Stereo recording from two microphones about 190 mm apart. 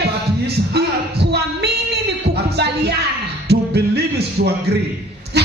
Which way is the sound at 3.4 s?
60° right (ahead or behind).